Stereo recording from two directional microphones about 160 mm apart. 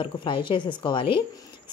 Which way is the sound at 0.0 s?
30° left (ahead or behind).